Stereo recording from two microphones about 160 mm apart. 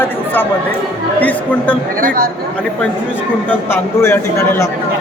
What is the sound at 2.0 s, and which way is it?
Speech, 60° right (ahead or behind).